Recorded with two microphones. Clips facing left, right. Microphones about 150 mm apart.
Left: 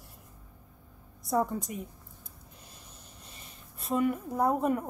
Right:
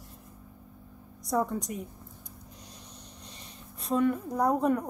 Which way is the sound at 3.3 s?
Centre (ahead or behind).